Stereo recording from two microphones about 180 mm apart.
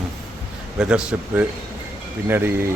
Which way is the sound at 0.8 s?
5° right (ahead or behind).